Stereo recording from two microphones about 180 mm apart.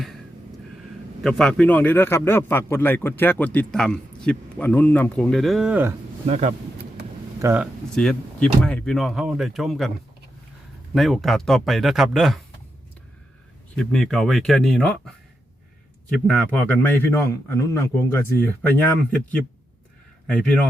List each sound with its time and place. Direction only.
1.2 s a man's voice: centre (ahead or behind)
6.2 s speech: 40° right (ahead or behind)
7.4 s speech: 10° right (ahead or behind)
7.9 s speech: 5° left (ahead or behind)
10.9 s speech: centre (ahead or behind)
13.7 s speech: 5° left (ahead or behind)
16.2 s a man's voice: 5° left (ahead or behind)
20.2 s speech: 5° left (ahead or behind)